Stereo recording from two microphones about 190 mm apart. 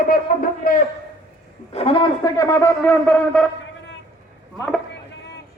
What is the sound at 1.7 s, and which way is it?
Speech, 35° left (ahead or behind).